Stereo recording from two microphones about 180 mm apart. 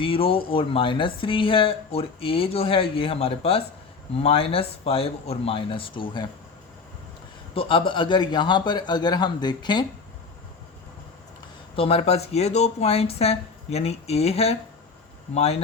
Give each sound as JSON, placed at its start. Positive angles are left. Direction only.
{"t": 0.0, "sound": "speech", "side_deg": 30}
{"t": 7.5, "sound": "a man's voice", "side_deg": 30}
{"t": 11.8, "sound": "speech", "side_deg": 35}